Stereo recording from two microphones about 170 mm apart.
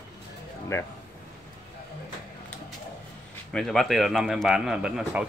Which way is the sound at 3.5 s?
5° left (ahead or behind).